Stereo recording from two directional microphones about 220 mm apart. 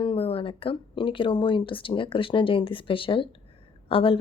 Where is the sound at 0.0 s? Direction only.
25° left (ahead or behind).